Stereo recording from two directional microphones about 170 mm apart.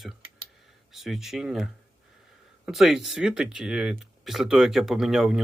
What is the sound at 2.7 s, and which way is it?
Speech, centre (ahead or behind).